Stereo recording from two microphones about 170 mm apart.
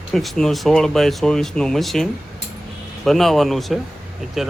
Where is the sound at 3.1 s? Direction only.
Centre (ahead or behind).